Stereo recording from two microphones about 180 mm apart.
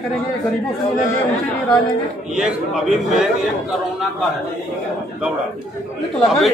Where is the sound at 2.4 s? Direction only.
5° right (ahead or behind).